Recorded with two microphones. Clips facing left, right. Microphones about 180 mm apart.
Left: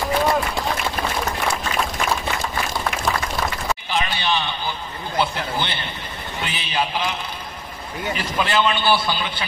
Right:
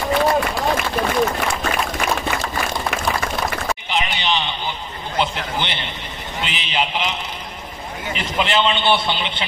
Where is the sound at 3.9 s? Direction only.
20° right (ahead or behind).